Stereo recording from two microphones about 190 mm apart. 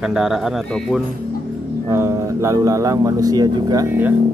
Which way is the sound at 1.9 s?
15° right (ahead or behind).